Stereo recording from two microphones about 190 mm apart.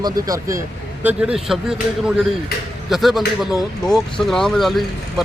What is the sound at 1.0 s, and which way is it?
Speech, 5° right (ahead or behind).